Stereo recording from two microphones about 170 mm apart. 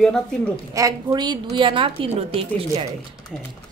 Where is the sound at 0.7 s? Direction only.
20° right (ahead or behind).